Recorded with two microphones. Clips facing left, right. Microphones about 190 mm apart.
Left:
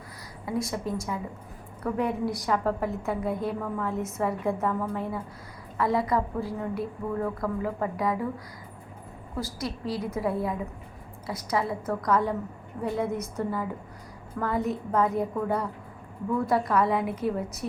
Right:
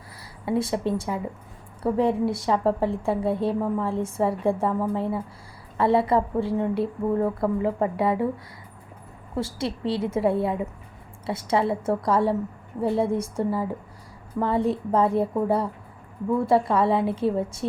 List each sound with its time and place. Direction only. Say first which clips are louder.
0.4 s a woman's voice: right 6 dB; 30° right (ahead or behind)
9.3 s a woman's voice: right 5 dB; 25° right (ahead or behind)